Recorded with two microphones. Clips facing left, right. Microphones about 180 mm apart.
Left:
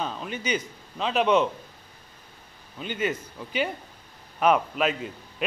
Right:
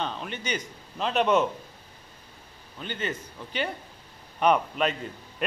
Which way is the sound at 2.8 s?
10° left (ahead or behind).